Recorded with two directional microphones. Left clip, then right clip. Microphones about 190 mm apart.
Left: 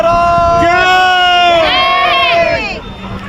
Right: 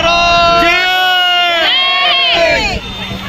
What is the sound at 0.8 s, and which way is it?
Baby cry, 15° left (ahead or behind).